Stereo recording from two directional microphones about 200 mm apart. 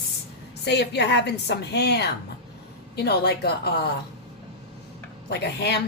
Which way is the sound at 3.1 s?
55° left (ahead or behind).